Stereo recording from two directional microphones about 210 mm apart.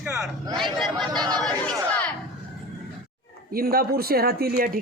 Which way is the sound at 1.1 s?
20° right (ahead or behind).